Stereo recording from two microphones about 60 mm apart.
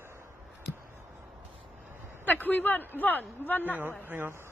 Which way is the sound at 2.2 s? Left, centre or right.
Left.